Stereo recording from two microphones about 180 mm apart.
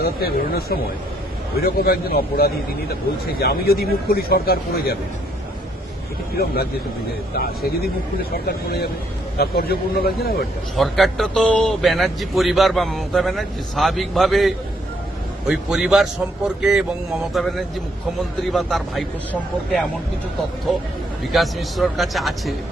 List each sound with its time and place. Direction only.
0.0 s speech: 60° left (ahead or behind)
7.3 s speech: 60° left (ahead or behind)
10.8 s a man's voice: centre (ahead or behind)
18.5 s a man's voice: centre (ahead or behind)
21.3 s a man's voice: centre (ahead or behind)